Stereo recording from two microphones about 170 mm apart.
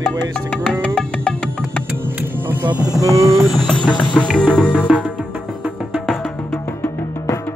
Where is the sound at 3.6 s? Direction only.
25° left (ahead or behind).